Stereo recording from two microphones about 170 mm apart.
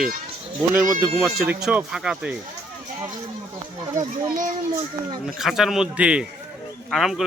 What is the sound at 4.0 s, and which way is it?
Speech, 50° right (ahead or behind).